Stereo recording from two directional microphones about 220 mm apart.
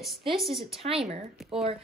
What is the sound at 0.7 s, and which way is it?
Speech, 25° right (ahead or behind).